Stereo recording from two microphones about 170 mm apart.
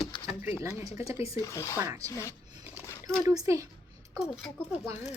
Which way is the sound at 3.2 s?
20° right (ahead or behind).